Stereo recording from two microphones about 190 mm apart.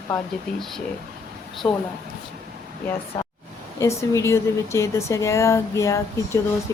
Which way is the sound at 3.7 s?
15° left (ahead or behind).